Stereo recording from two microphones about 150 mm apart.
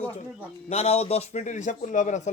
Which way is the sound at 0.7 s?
45° left (ahead or behind).